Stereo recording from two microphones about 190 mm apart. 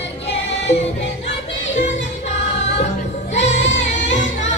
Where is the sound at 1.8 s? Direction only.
40° left (ahead or behind).